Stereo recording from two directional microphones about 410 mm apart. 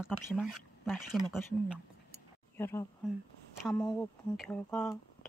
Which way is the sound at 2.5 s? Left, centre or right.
Centre.